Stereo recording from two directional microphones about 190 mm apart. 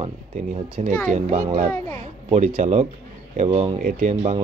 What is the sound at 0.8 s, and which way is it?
Speech, 40° right (ahead or behind).